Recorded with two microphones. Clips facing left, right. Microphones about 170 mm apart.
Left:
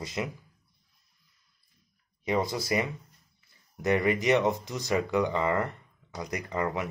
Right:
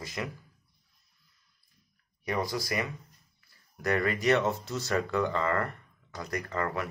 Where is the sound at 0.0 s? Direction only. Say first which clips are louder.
Left 3 dB; 20° left (ahead or behind).